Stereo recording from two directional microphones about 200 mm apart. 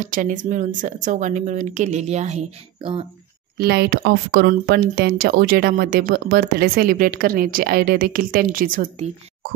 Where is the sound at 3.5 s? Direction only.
55° right (ahead or behind).